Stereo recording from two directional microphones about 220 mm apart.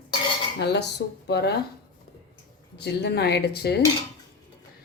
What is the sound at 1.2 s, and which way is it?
Speech, 50° left (ahead or behind).